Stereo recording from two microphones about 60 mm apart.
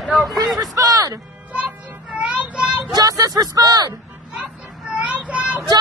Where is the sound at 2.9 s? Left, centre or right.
Right.